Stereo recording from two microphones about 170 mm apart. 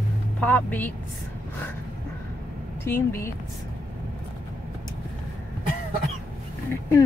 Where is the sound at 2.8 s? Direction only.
15° left (ahead or behind).